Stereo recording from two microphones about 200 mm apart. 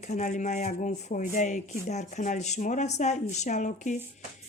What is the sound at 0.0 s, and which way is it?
Speech, 35° left (ahead or behind).